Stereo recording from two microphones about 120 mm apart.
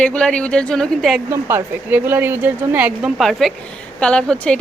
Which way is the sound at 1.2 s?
20° right (ahead or behind).